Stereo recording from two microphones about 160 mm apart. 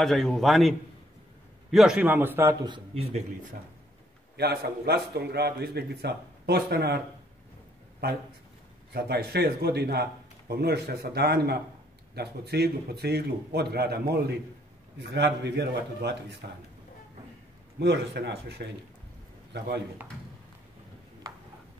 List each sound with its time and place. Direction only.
0.0 s a man's voice: centre (ahead or behind); by 2.5 s 15° right (ahead or behind)
2.9 s speech: 40° right (ahead or behind)
4.4 s a man's voice: 90° right
8.9 s a man's voice: 85° right
17.7 s speech: 90° right